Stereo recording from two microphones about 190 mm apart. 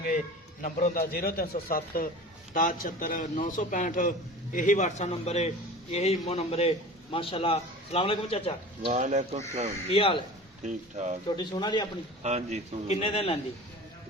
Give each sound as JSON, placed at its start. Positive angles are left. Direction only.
{"t": 0.6, "sound": "a man's voice", "side_deg": 45}
{"t": 8.9, "sound": "speech", "side_deg": -40}
{"t": 9.9, "sound": "speech", "side_deg": 30}
{"t": 10.6, "sound": "speech", "side_deg": -40}
{"t": 11.3, "sound": "speech", "side_deg": 20}
{"t": 12.2, "sound": "speech", "side_deg": -35}
{"t": 12.9, "sound": "a man's voice", "side_deg": 35}